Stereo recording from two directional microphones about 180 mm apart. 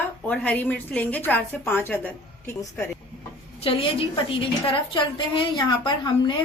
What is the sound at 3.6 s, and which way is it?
A woman's voice, 30° left (ahead or behind).